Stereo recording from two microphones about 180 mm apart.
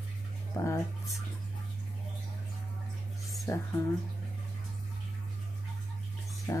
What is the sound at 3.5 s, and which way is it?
Speech, 15° left (ahead or behind).